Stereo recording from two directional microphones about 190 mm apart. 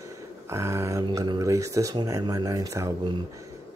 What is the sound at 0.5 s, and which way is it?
Speech, 15° right (ahead or behind).